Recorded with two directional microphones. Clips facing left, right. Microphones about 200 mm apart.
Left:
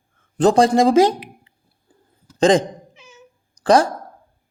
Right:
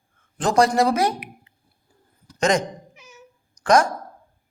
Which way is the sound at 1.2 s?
30° left (ahead or behind).